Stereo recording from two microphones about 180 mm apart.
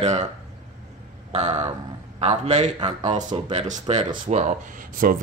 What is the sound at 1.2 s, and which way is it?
Speech, 35° right (ahead or behind).